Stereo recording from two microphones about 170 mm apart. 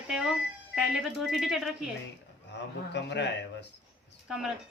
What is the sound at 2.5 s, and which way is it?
Speech, 90° left.